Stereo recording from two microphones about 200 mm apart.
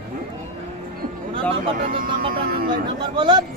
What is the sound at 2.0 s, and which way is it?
Speech, 45° right (ahead or behind).